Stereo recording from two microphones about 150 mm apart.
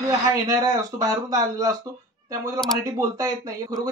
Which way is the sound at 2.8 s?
20° right (ahead or behind).